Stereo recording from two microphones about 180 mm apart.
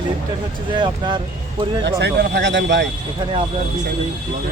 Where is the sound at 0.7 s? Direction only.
25° right (ahead or behind).